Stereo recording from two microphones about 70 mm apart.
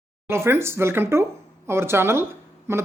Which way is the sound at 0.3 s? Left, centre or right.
Right.